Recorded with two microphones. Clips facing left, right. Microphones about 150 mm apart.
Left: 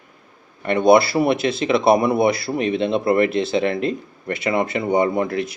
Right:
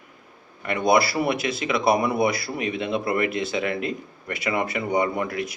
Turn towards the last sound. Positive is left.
turn(degrees=30)  # may be behind; listen again after turning